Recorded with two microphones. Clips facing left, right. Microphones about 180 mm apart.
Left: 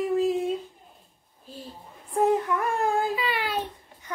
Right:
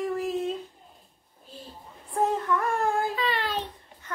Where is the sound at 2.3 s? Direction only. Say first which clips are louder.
Left 2 dB; 15° left (ahead or behind).